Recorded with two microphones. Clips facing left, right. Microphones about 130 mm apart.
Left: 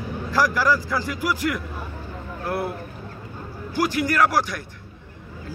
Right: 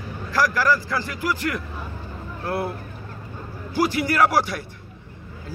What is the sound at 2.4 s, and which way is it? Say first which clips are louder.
Speech: even; centre (ahead or behind).